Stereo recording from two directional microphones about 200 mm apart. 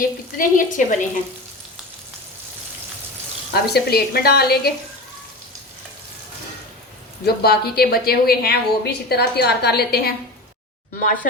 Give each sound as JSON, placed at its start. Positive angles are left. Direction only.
{"t": 0.0, "sound": "speech", "side_deg": 40}
{"t": 3.5, "sound": "a woman's voice", "side_deg": 55}
{"t": 7.3, "sound": "a woman's voice", "side_deg": 50}